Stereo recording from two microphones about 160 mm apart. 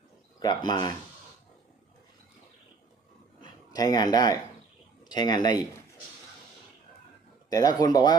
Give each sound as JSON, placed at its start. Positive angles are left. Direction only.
{"t": 0.3, "sound": "speech", "side_deg": 25}
{"t": 3.4, "sound": "a sound", "side_deg": 25}
{"t": 5.0, "sound": "speech", "side_deg": 25}
{"t": 7.5, "sound": "speech", "side_deg": 25}